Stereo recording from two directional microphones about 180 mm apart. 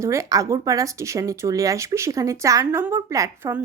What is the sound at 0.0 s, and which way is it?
A woman's voice, 15° right (ahead or behind).